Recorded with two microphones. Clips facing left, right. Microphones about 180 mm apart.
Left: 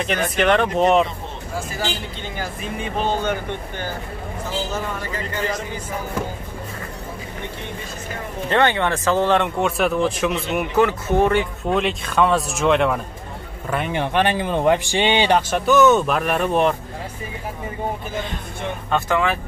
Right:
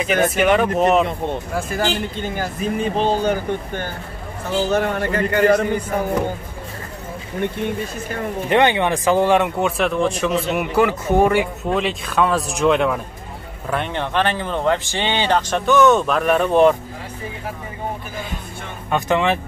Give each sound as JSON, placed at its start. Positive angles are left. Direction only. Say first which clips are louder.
{"t": 0.4, "sound": "speech", "louder": "left 2 dB", "side_deg": -5}
{"t": 1.0, "sound": "speech", "louder": "right 8 dB", "side_deg": -55}
{"t": 2.8, "sound": "speech", "louder": "right 3 dB", "side_deg": -35}
{"t": 4.6, "sound": "speech", "louder": "right 8 dB", "side_deg": -65}
{"t": 8.5, "sound": "speech", "louder": "right 2 dB", "side_deg": -15}
{"t": 11.7, "sound": "speech", "louder": "left 1 dB", "side_deg": 0}
{"t": 15.5, "sound": "speech", "louder": "right 1 dB", "side_deg": 5}
{"t": 18.9, "sound": "speech", "louder": "right 2 dB", "side_deg": -20}